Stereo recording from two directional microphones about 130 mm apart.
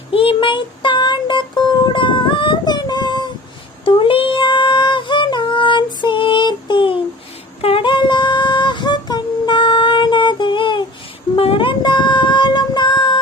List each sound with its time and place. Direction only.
0.1 s music: 45° left (ahead or behind)
3.8 s female singing: 40° left (ahead or behind)
7.6 s humming: 45° left (ahead or behind)
11.3 s child singing: 45° left (ahead or behind)